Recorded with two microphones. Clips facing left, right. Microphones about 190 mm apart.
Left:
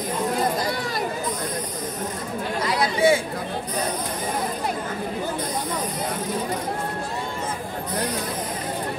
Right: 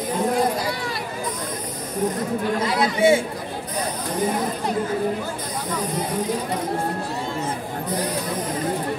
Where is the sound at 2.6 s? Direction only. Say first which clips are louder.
Left 1 dB; 25° right (ahead or behind).